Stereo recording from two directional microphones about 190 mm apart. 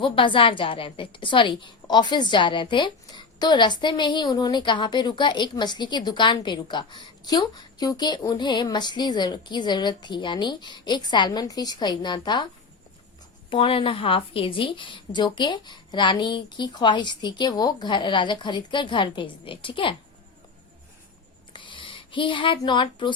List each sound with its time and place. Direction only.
0.0 s a woman's voice: 25° left (ahead or behind)
13.5 s a woman's voice: 30° left (ahead or behind)
21.5 s a sound: 25° left (ahead or behind)